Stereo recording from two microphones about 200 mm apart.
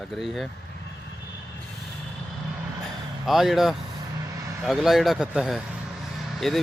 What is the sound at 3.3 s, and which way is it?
Speech, centre (ahead or behind).